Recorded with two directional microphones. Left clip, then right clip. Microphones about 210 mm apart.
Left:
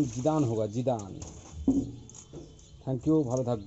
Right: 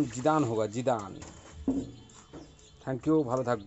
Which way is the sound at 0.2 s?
30° right (ahead or behind).